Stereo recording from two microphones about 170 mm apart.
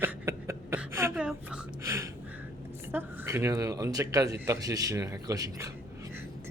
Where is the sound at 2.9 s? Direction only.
15° right (ahead or behind).